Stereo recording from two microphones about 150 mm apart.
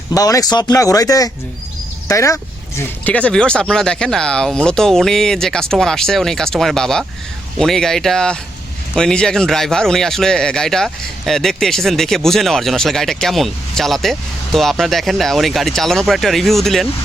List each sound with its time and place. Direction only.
0.1 s speech: 25° left (ahead or behind)
3.0 s speech: 10° left (ahead or behind)